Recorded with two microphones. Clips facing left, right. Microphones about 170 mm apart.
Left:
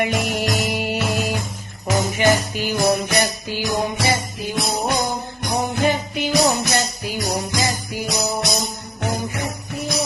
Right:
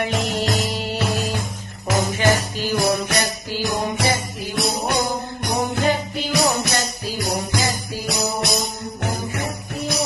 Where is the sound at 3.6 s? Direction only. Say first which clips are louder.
Left 1 dB; 60° right (ahead or behind).